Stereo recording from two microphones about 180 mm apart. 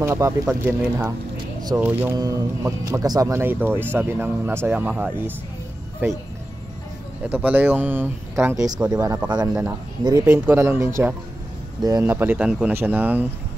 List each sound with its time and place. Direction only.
0.0 s speech: 15° right (ahead or behind)
1.6 s a sound: 20° right (ahead or behind)
1.9 s speech: 10° right (ahead or behind)
7.2 s speech: 10° right (ahead or behind)